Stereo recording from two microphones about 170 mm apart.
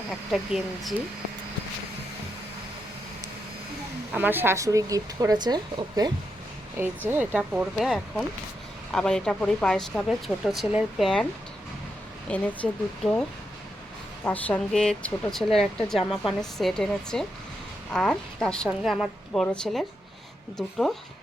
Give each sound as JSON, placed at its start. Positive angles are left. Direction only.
{"t": 0.1, "sound": "speech", "side_deg": 0}
{"t": 4.1, "sound": "speech", "side_deg": -10}
{"t": 7.1, "sound": "speech", "side_deg": -10}
{"t": 12.3, "sound": "speech", "side_deg": 5}
{"t": 14.3, "sound": "speech", "side_deg": 10}